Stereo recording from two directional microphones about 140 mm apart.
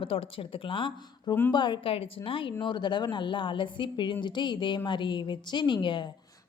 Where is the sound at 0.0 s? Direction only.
40° left (ahead or behind).